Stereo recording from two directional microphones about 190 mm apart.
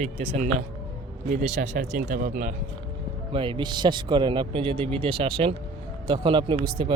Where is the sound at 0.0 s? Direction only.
35° right (ahead or behind).